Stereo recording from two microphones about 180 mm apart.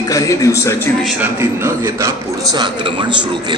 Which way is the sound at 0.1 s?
20° left (ahead or behind).